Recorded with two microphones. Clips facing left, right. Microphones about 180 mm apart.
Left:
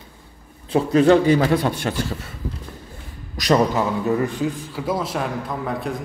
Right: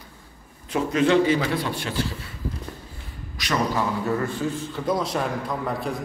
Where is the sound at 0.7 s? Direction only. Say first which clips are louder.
Left 6 dB; 35° left (ahead or behind).